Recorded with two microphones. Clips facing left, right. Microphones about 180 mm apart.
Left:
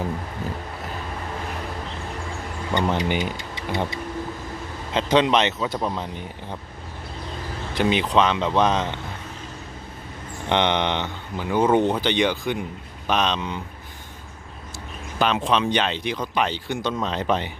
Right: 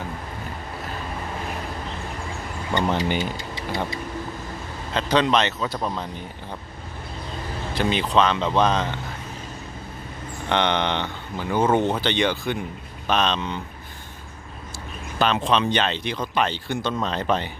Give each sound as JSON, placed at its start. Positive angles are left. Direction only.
{"t": 2.9, "sound": "speech", "side_deg": 15}
{"t": 4.9, "sound": "speech", "side_deg": 20}
{"t": 7.8, "sound": "speech", "side_deg": 15}
{"t": 10.5, "sound": "speech", "side_deg": 20}
{"t": 15.2, "sound": "speech", "side_deg": 10}